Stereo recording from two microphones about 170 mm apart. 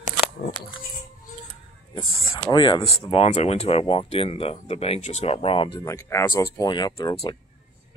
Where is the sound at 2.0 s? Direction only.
35° left (ahead or behind).